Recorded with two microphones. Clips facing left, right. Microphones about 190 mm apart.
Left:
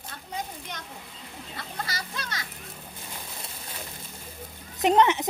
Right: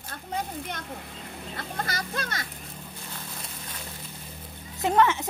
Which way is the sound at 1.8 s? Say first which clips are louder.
Right 4 dB; 50° right (ahead or behind).